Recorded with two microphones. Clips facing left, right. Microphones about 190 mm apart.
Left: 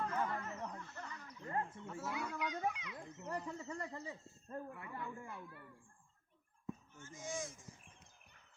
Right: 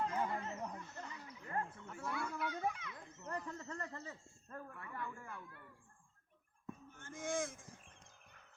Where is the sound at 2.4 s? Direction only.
15° left (ahead or behind).